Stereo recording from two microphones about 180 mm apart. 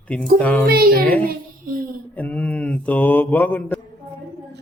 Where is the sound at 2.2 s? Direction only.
10° left (ahead or behind).